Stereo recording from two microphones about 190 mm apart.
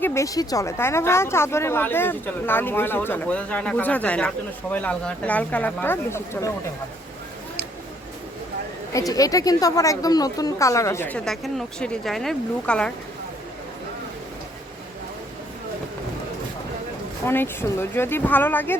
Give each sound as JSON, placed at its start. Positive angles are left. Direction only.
{"t": 0.0, "sound": "speech", "side_deg": 15}
{"t": 8.9, "sound": "speech", "side_deg": 15}
{"t": 17.2, "sound": "speech", "side_deg": 10}